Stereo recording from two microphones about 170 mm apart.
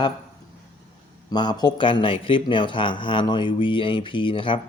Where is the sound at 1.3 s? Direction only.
25° left (ahead or behind).